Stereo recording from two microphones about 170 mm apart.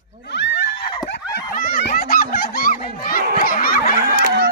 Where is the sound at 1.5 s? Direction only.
55° left (ahead or behind).